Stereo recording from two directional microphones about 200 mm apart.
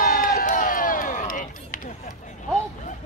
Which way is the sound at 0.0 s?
40° left (ahead or behind).